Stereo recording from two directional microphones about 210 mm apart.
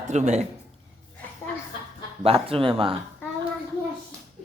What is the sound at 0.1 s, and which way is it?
Speech, 35° right (ahead or behind).